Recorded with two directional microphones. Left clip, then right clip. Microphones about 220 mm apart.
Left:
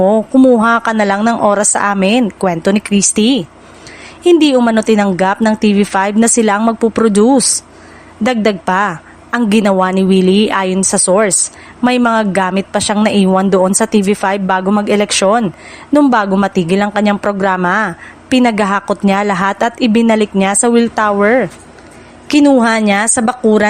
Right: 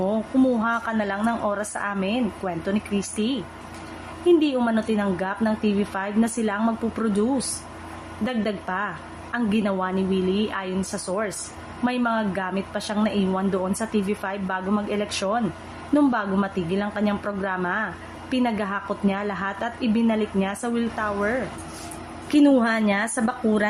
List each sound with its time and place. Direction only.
0.0 s a woman's voice: 40° left (ahead or behind)